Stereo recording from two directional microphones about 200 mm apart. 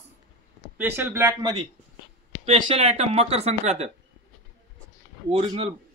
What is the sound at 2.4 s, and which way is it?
Speech, 30° right (ahead or behind).